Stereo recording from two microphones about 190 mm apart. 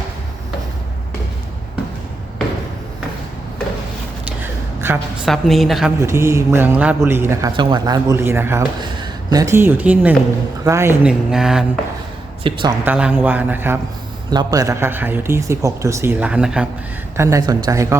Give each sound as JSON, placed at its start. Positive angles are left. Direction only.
{"t": 4.8, "sound": "a woman's voice", "side_deg": -15}
{"t": 5.2, "sound": "speech", "side_deg": 0}
{"t": 6.1, "sound": "speech", "side_deg": -15}
{"t": 7.5, "sound": "speech", "side_deg": -25}
{"t": 12.4, "sound": "a man's voice", "side_deg": -25}
{"t": 12.8, "sound": "speech", "side_deg": -5}
{"t": 17.2, "sound": "speech", "side_deg": -15}